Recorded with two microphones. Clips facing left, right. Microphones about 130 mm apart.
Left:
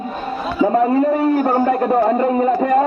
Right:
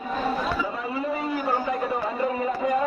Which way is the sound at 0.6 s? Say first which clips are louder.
Left 14 dB; 50° left (ahead or behind).